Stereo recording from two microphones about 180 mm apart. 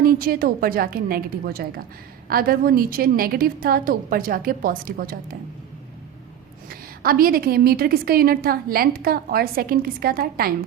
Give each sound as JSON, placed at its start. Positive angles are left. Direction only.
{"t": 0.0, "sound": "a woman's voice", "side_deg": -55}
{"t": 6.7, "sound": "a woman's voice", "side_deg": -55}